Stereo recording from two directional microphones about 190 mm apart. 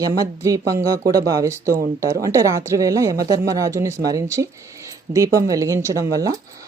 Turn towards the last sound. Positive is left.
turn(degrees=-20)  # may be behind; listen again after turning